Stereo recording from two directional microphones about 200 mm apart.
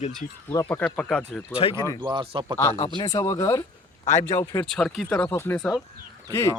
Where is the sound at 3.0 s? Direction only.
15° left (ahead or behind).